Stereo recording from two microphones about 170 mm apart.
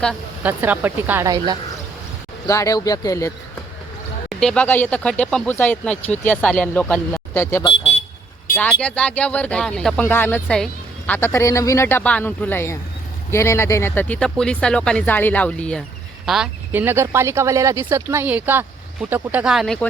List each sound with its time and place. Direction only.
0.4 s speech: 10° right (ahead or behind)
2.5 s speech: 20° left (ahead or behind)
4.3 s speech: 5° left (ahead or behind)
7.6 s vehicle: 30° left (ahead or behind)
8.5 s speech: 10° left (ahead or behind)